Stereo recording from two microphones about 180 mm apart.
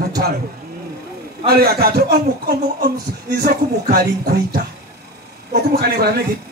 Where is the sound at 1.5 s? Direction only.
60° right (ahead or behind).